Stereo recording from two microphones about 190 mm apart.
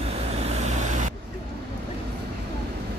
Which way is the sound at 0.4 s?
35° right (ahead or behind).